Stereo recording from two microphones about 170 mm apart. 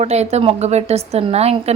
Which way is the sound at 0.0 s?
40° right (ahead or behind).